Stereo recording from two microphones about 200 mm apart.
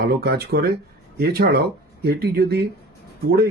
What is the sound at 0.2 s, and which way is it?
Speech, 55° right (ahead or behind).